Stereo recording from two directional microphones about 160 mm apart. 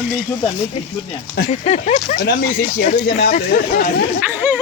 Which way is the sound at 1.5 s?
45° left (ahead or behind).